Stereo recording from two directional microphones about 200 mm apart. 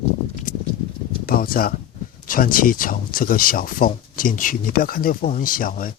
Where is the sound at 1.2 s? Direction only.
45° left (ahead or behind).